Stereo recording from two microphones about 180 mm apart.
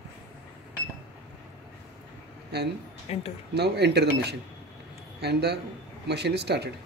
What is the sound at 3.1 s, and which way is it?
Speech, 35° left (ahead or behind).